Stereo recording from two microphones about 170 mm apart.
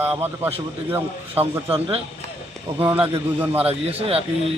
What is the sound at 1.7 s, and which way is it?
Speech, 35° right (ahead or behind).